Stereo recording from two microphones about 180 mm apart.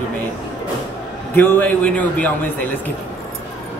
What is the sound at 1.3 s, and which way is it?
A man's voice, 10° left (ahead or behind).